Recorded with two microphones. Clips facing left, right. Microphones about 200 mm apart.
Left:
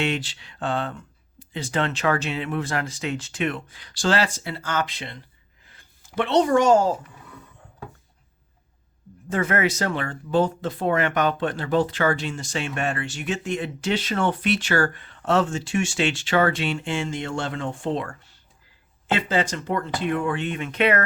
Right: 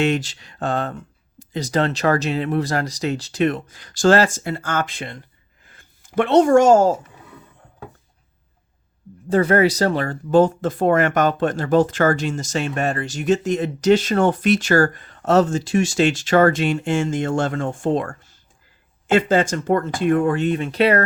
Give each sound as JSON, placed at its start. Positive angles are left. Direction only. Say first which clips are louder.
{"t": 0.0, "sound": "speech", "louder": "right 6 dB", "side_deg": -40}
{"t": 9.3, "sound": "speech", "louder": "right 7 dB", "side_deg": -35}